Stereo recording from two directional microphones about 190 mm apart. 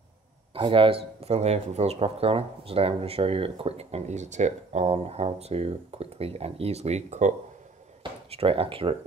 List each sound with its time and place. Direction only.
0.6 s speech: 25° right (ahead or behind)